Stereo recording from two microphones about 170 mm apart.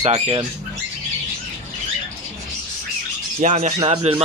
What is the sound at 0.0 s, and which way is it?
Speech, 40° right (ahead or behind).